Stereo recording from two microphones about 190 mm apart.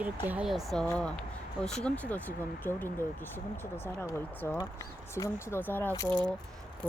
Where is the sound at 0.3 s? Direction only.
5° right (ahead or behind).